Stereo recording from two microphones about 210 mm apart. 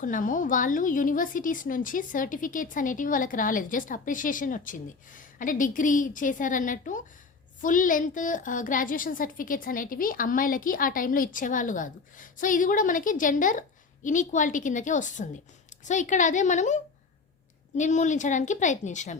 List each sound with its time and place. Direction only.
0.0 s a woman's voice: 40° left (ahead or behind)